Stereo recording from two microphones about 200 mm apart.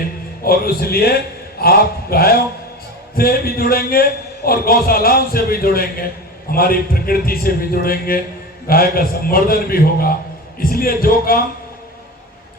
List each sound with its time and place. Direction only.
0.4 s a man's voice: 50° left (ahead or behind)